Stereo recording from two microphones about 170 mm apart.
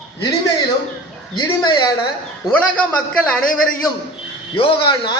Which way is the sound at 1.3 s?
25° left (ahead or behind).